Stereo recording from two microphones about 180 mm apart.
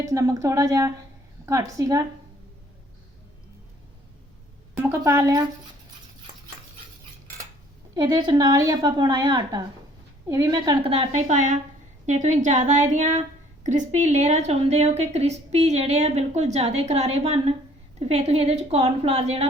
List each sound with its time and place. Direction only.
0.0 s a woman's voice: 15° right (ahead or behind)
4.8 s a woman's voice: 15° right (ahead or behind)
7.9 s a woman's voice: 25° right (ahead or behind)
10.9 s a woman's voice: 35° right (ahead or behind)